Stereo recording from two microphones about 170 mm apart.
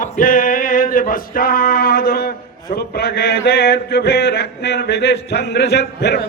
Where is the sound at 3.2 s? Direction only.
70° left (ahead or behind).